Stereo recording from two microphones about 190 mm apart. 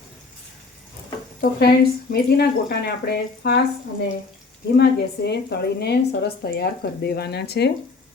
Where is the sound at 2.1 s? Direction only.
55° left (ahead or behind).